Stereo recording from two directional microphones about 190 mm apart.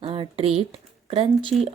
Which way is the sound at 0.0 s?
25° right (ahead or behind).